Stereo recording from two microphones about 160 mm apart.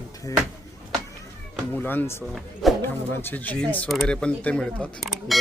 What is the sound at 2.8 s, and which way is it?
Speech, 15° left (ahead or behind).